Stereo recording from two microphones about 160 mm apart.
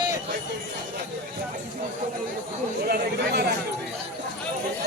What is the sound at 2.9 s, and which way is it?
Speech, 85° right.